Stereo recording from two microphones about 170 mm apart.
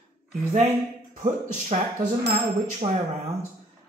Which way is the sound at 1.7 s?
45° right (ahead or behind).